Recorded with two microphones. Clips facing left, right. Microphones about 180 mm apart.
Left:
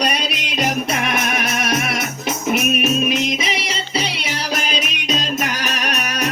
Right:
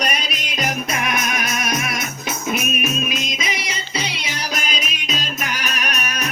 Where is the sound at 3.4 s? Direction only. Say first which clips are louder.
Left 3 dB; 30° left (ahead or behind).